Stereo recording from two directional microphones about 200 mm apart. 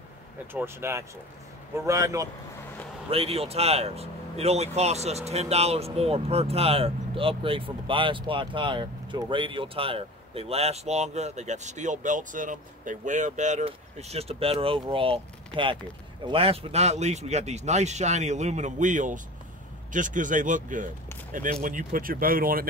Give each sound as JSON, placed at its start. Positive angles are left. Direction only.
{"t": 0.5, "sound": "speech", "side_deg": -10}
{"t": 3.1, "sound": "speech", "side_deg": -30}